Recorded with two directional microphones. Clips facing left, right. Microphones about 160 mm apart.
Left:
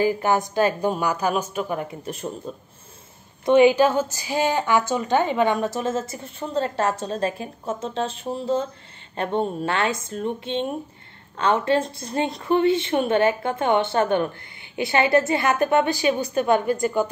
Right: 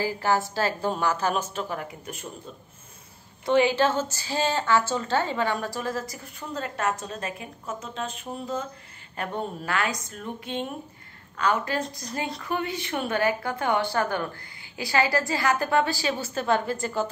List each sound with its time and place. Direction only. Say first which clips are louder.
0.0 s a woman's voice: left 5 dB; 20° left (ahead or behind)
1.8 s a woman's voice: left 6 dB; 25° left (ahead or behind)
2.5 s speech: left 8 dB; 40° left (ahead or behind)
3.4 s a woman's voice: left 6 dB; 20° left (ahead or behind)